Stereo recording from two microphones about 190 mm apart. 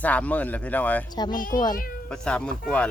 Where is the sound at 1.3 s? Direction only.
45° left (ahead or behind).